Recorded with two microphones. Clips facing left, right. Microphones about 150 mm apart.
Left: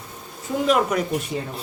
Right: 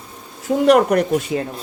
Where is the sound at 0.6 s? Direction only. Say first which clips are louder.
Right 7 dB; 70° right (ahead or behind).